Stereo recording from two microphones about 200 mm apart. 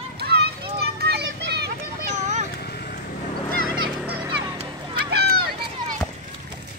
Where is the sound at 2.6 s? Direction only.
50° left (ahead or behind).